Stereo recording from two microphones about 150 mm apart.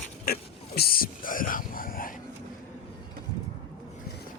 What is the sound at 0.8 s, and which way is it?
Whispering, 80° left.